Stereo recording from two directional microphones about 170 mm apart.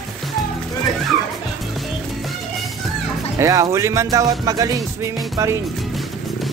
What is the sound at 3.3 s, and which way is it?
Speech, 20° right (ahead or behind).